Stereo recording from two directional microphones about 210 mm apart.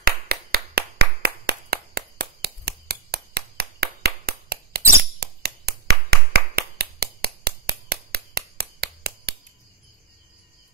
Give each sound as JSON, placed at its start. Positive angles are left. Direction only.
{"t": 0.0, "sound": "clapping", "side_deg": -50}
{"t": 5.2, "sound": "finger snapping", "side_deg": -50}